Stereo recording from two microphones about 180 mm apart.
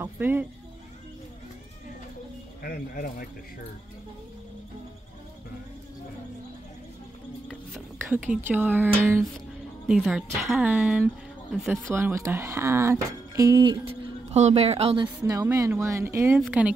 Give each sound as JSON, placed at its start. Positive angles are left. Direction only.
{"t": 0.0, "sound": "speech", "side_deg": -10}
{"t": 2.6, "sound": "speech", "side_deg": 55}
{"t": 8.1, "sound": "a woman's voice", "side_deg": -10}
{"t": 11.9, "sound": "speech", "side_deg": -15}
{"t": 14.3, "sound": "speech", "side_deg": -35}
{"t": 15.2, "sound": "speech", "side_deg": -15}
{"t": 16.3, "sound": "a woman's voice", "side_deg": -5}